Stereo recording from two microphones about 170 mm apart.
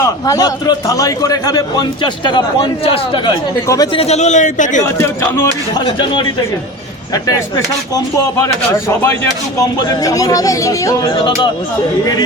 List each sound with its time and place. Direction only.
0.0 s a man's voice: 20° left (ahead or behind)
4.0 s a man's voice: 40° left (ahead or behind)
4.9 s speech: 15° left (ahead or behind)
5.7 s a man's voice: 25° left (ahead or behind)
9.6 s a man's voice: 20° left (ahead or behind)